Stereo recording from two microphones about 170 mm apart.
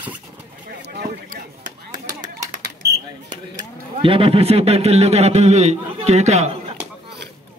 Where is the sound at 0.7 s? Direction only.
65° right (ahead or behind).